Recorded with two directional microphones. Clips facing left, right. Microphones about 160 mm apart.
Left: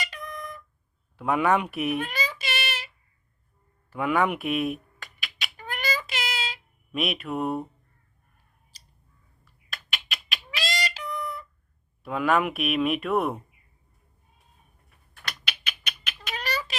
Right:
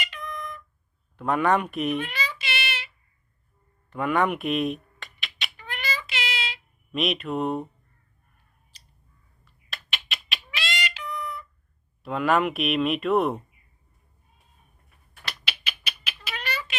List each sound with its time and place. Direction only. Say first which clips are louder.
0.0 s music: right 1 dB; 40° left (ahead or behind)
1.1 s speech: even; 10° left (ahead or behind)
2.0 s child singing: left 1 dB; 45° left (ahead or behind)
3.8 s a sound: even; 5° left (ahead or behind)
5.5 s child singing: left 3 dB; 45° left (ahead or behind)
6.9 s speech: right 2 dB; 5° left (ahead or behind)
8.7 s a sound: right 1 dB; 40° left (ahead or behind)
9.4 s cat: even; centre (ahead or behind)
10.6 s a sound: left 2 dB; 40° left (ahead or behind)
12.0 s speech: right 1 dB; centre (ahead or behind)
15.2 s cat: right 1 dB; 5° right (ahead or behind)
16.3 s a sound: left 2 dB; 40° left (ahead or behind)